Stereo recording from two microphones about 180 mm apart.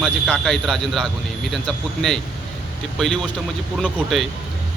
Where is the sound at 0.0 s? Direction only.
Centre (ahead or behind).